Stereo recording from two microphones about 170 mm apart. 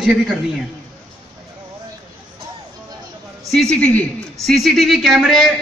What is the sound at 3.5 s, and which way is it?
A man's voice, 5° left (ahead or behind).